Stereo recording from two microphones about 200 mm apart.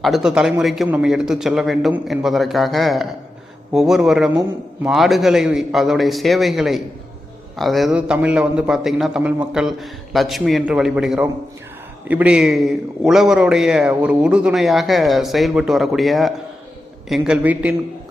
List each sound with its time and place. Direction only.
0.0 s a man's voice: centre (ahead or behind)